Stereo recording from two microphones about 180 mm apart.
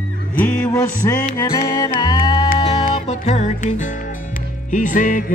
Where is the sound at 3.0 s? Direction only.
40° left (ahead or behind).